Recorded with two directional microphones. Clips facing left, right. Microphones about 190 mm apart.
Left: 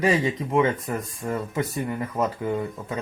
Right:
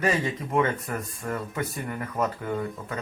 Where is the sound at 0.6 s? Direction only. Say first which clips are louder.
Left 3 dB; 20° left (ahead or behind).